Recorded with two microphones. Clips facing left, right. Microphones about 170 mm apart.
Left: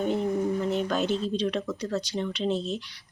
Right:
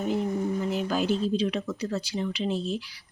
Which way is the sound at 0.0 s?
Centre (ahead or behind).